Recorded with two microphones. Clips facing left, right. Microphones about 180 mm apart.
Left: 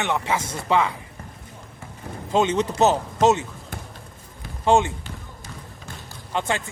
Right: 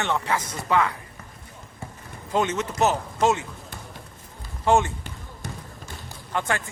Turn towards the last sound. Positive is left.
turn(degrees=20)  # may be behind; listen again after turning